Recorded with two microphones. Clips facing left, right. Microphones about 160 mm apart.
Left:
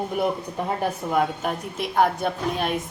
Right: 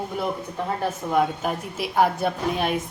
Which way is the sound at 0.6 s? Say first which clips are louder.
Left 1 dB; 15° left (ahead or behind).